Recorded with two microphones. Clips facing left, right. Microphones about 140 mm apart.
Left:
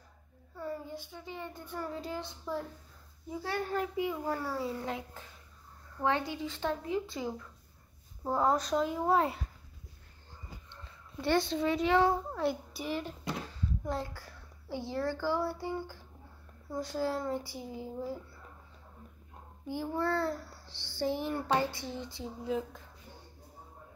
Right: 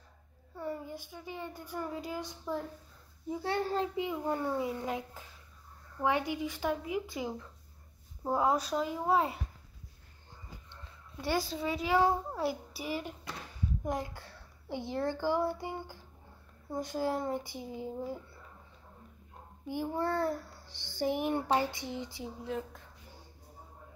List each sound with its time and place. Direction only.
0.6 s a child's voice: 20° right (ahead or behind); by 9.4 s 5° right (ahead or behind)
10.7 s a child's voice: 10° right (ahead or behind)
13.6 s a sound: 15° right (ahead or behind)
14.7 s a child's voice: 20° right (ahead or behind)
19.7 s a child's voice: 15° right (ahead or behind)
22.4 s speech: centre (ahead or behind)